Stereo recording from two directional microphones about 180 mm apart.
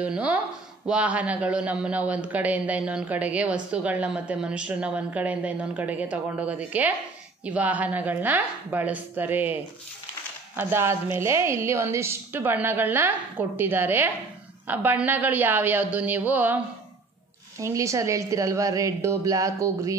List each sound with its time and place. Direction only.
0.0 s a man's voice: 5° right (ahead or behind)
17.6 s a man's voice: 15° right (ahead or behind)